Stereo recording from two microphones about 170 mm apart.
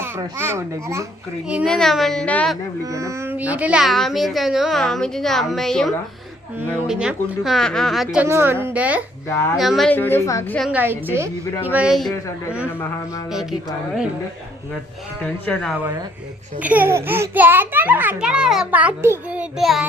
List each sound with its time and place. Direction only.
0.0 s a child's voice: 15° right (ahead or behind)
1.6 s a child's voice: 5° left (ahead or behind)
2.8 s a child's voice: 20° right (ahead or behind); by 8.3 s 5° right (ahead or behind)
8.3 s a child's voice: 15° right (ahead or behind)
9.3 s a woman's voice: 15° left (ahead or behind)
9.6 s a woman's voice: centre (ahead or behind); by 10.6 s 15° left (ahead or behind)
10.6 s a child's voice: 10° right (ahead or behind)
15.2 s a woman's voice: 5° left (ahead or behind)
16.6 s a child's voice: 10° right (ahead or behind)